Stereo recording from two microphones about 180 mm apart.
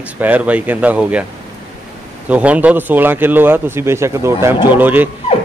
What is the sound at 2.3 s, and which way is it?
A man's voice, 10° right (ahead or behind).